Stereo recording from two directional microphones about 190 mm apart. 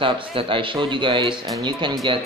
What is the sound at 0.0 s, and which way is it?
A man's voice, 30° right (ahead or behind).